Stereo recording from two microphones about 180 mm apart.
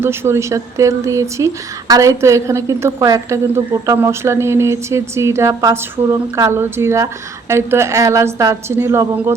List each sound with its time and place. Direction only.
0.0 s a woman's voice: 15° right (ahead or behind)